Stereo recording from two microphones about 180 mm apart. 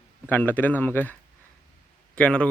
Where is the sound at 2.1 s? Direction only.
5° left (ahead or behind).